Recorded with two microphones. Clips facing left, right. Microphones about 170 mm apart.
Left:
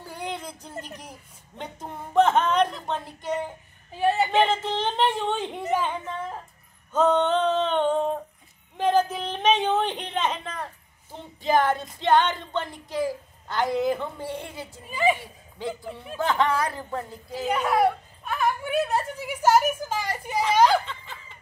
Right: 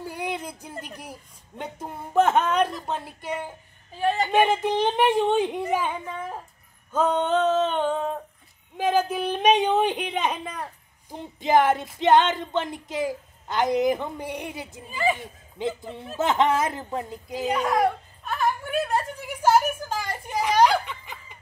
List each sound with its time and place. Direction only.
0.0 s a sound: 10° right (ahead or behind)
1.6 s a woman's voice: 10° right (ahead or behind)
4.0 s a man's voice: 10° left (ahead or behind)
4.3 s a woman's voice: 10° right (ahead or behind)
6.9 s female singing: 10° right (ahead or behind)
8.7 s a woman's voice: 10° right (ahead or behind)
17.5 s speech: 10° left (ahead or behind)
19.6 s a sound: 10° left (ahead or behind)
20.6 s snicker: 15° right (ahead or behind)